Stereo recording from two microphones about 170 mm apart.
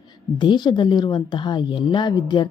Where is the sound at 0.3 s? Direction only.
25° left (ahead or behind).